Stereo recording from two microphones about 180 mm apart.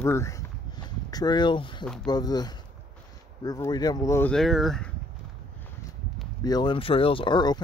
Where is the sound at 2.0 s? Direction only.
20° left (ahead or behind).